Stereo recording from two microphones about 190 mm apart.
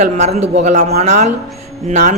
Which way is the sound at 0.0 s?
35° right (ahead or behind).